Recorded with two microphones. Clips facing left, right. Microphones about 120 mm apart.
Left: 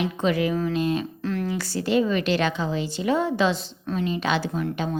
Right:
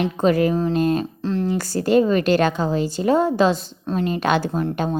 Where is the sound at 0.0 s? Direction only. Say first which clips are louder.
Right 5 dB; 45° right (ahead or behind).